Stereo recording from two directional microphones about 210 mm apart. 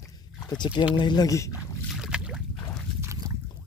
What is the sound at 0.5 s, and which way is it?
Speech, 20° left (ahead or behind).